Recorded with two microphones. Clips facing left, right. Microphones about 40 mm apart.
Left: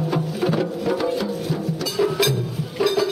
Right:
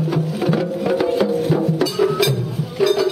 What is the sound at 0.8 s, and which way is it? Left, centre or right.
Music, right.